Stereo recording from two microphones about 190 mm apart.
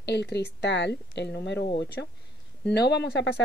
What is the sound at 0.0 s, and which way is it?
Speech, 65° left (ahead or behind).